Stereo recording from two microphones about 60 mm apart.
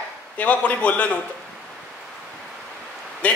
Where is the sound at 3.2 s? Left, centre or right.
Left.